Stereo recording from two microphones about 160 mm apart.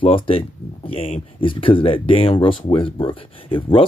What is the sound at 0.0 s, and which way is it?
Speech, 35° left (ahead or behind).